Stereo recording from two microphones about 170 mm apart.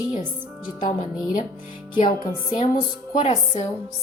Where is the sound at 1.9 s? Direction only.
50° left (ahead or behind).